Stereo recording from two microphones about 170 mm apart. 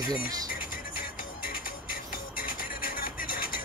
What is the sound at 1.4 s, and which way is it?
Music, 55° left (ahead or behind).